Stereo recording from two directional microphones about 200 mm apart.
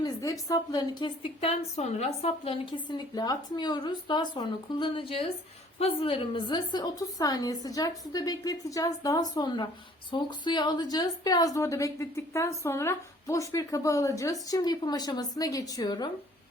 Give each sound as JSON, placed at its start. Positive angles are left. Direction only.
{"t": 0.0, "sound": "a woman's voice", "side_deg": 15}
{"t": 1.4, "sound": "a woman's voice", "side_deg": 30}